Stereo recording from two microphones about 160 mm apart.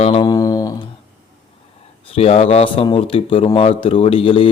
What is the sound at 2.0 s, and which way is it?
Speech, 40° left (ahead or behind).